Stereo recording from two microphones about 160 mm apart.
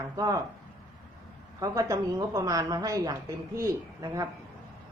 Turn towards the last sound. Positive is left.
turn(degrees=-20)  # may be behind; listen again after turning